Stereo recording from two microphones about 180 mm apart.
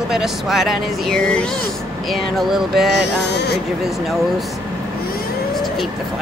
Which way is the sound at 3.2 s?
70° left (ahead or behind).